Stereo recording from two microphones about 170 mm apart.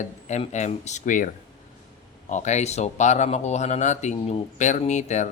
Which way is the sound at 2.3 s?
45° left (ahead or behind).